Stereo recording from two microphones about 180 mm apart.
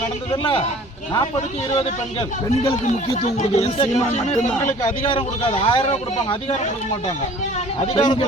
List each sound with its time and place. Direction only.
3.2 s speech: 35° left (ahead or behind)
7.9 s speech: 25° left (ahead or behind)